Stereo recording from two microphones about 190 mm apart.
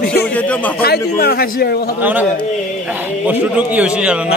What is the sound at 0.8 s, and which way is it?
Speech, 55° left (ahead or behind).